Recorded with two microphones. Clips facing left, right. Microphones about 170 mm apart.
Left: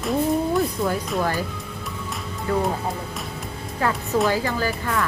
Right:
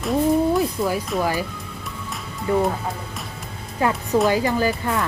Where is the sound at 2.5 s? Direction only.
20° right (ahead or behind).